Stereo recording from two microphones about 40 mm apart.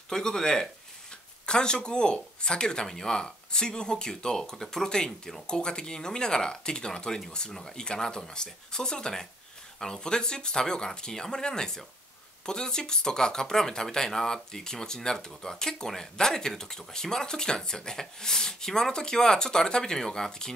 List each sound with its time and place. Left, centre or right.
0.1 s speech: centre